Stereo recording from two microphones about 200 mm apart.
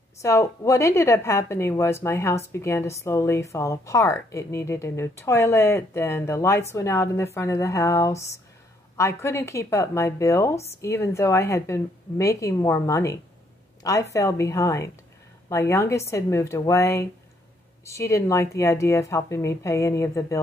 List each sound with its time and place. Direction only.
0.2 s a woman's voice: 15° left (ahead or behind)